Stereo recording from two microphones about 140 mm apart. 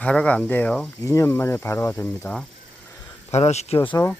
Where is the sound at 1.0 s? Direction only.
20° left (ahead or behind).